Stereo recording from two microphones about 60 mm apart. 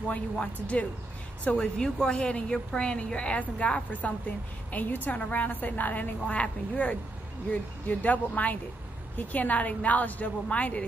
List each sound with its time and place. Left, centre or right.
0.1 s a woman's voice: left